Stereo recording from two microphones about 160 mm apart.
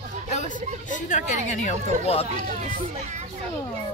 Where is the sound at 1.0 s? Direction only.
50° left (ahead or behind).